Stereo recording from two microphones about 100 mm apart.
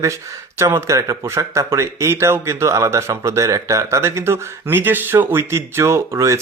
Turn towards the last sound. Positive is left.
turn(degrees=-30)  # may be behind; listen again after turning